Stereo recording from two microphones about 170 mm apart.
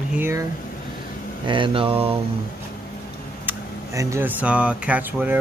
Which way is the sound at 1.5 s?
30° right (ahead or behind).